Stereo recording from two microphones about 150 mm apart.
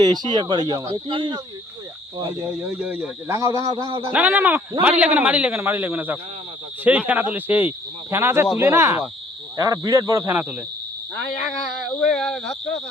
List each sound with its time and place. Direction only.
0.0 s speech: 30° right (ahead or behind)
2.2 s speech: 10° right (ahead or behind); by 4.0 s 30° right (ahead or behind)
4.1 s speech: 10° right (ahead or behind)
12.1 s speech: 5° left (ahead or behind)